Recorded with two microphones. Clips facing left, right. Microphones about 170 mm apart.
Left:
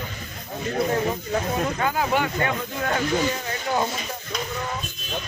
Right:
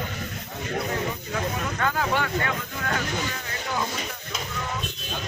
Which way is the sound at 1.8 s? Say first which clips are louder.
Right 1 dB; 15° left (ahead or behind).